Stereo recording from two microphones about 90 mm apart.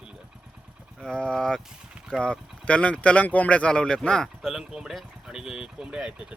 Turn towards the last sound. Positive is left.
turn(degrees=-10)  # may be behind; listen again after turning